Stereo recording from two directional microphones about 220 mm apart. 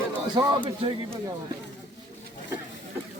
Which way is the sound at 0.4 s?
20° right (ahead or behind).